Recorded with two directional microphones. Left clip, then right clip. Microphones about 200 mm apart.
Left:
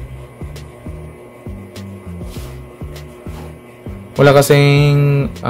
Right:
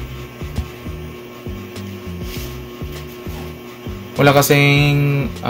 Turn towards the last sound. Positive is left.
turn(degrees=55)  # may be behind; listen again after turning